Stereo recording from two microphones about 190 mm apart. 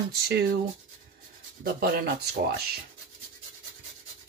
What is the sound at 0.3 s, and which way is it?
Speech, 55° right (ahead or behind).